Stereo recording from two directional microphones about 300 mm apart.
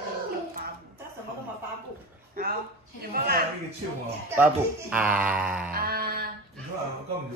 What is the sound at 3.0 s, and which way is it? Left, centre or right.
Speech, right.